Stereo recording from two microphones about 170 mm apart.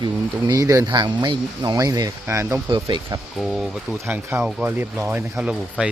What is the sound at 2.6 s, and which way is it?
Speech, 25° right (ahead or behind).